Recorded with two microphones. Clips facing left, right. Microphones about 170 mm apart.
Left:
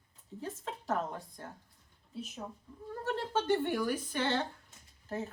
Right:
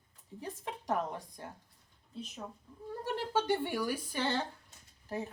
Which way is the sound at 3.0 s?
10° right (ahead or behind).